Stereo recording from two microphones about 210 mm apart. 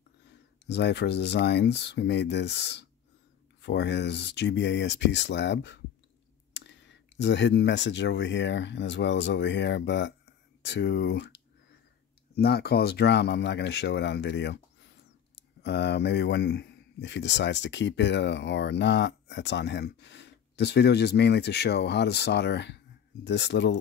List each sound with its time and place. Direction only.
0.3 s speech: 55° left (ahead or behind)